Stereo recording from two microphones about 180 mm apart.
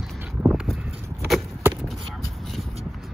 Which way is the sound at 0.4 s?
Centre (ahead or behind).